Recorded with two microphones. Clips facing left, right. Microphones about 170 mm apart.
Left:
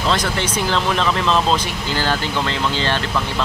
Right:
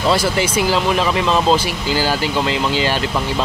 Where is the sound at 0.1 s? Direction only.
10° right (ahead or behind).